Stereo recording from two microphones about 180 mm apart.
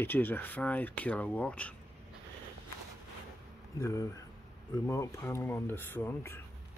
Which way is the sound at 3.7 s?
15° left (ahead or behind).